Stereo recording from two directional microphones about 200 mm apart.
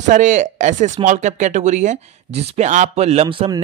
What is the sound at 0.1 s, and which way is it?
Speech, 40° right (ahead or behind).